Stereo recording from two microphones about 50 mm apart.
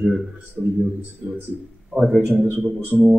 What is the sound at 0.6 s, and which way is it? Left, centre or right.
Speech, right.